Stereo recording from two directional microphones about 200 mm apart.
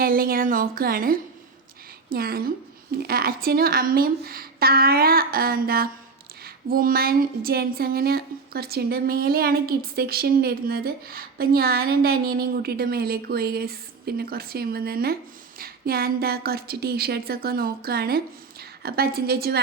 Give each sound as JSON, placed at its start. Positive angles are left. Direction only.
{"t": 0.0, "sound": "speech", "side_deg": -45}